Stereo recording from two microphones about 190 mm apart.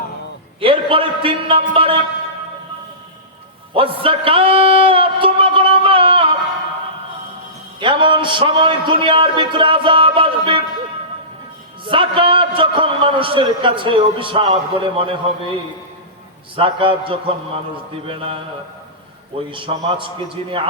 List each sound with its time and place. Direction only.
0.6 s a man's voice: 30° right (ahead or behind)
3.8 s a sound: 30° right (ahead or behind)
7.8 s a man's voice: 25° right (ahead or behind)
11.9 s a man's voice: 25° right (ahead or behind)
16.6 s a man's voice: 25° right (ahead or behind)
19.5 s a man's voice: 25° right (ahead or behind)